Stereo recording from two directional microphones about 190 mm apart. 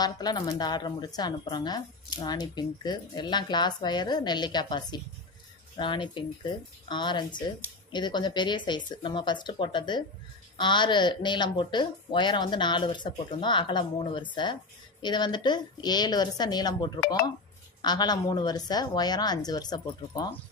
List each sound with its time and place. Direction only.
0.0 s a woman's voice: 20° left (ahead or behind)